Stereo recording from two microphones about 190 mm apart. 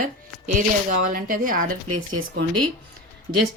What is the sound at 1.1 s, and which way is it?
Speech, 50° right (ahead or behind).